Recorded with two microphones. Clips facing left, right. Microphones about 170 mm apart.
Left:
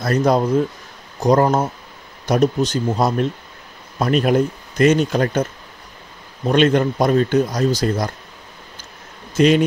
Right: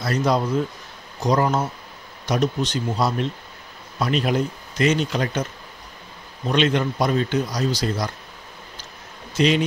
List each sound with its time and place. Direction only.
0.0 s speech: 50° left (ahead or behind)
9.3 s speech: 50° left (ahead or behind)